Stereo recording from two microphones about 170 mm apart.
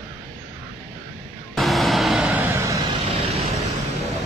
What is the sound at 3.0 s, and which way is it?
Vehicle, 35° right (ahead or behind).